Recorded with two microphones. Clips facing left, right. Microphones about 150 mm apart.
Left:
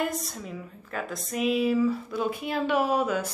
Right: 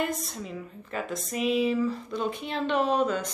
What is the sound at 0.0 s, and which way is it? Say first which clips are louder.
Speech: even; centre (ahead or behind).